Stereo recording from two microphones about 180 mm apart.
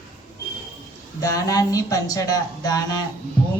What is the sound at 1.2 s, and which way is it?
A man's voice, 20° left (ahead or behind).